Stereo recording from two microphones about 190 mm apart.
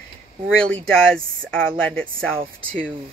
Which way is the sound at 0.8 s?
5° left (ahead or behind).